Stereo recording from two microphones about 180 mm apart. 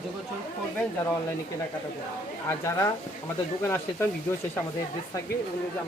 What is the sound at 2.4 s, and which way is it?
Speech, 15° left (ahead or behind).